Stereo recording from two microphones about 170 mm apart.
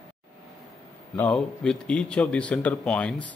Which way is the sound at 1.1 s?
5° left (ahead or behind).